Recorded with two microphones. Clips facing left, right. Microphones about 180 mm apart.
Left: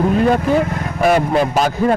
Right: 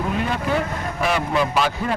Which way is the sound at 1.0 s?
45° left (ahead or behind).